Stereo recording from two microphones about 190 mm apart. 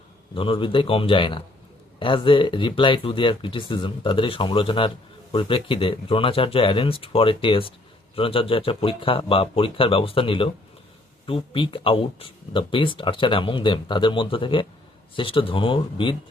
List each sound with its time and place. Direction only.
0.3 s speech: 30° left (ahead or behind)